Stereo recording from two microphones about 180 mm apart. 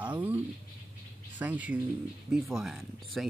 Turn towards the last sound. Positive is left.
turn(degrees=0)  # may be behind; listen again after turning